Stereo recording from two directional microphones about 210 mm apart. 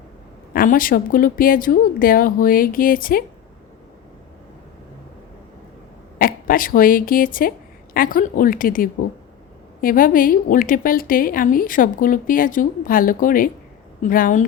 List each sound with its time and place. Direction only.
0.5 s a woman's voice: 40° left (ahead or behind)
6.1 s a woman's voice: 40° left (ahead or behind)